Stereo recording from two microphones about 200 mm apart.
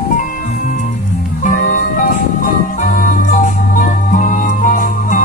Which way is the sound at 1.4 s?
40° left (ahead or behind).